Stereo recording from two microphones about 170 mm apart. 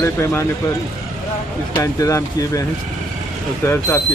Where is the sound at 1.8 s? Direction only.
20° left (ahead or behind).